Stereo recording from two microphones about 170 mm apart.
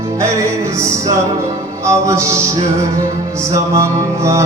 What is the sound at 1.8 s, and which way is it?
Mantra, 15° right (ahead or behind).